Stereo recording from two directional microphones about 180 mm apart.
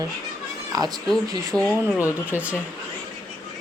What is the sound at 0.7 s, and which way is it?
Speech, 20° right (ahead or behind).